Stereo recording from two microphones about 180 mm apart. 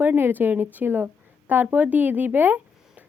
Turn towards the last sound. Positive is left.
turn(degrees=-10)  # may be behind; listen again after turning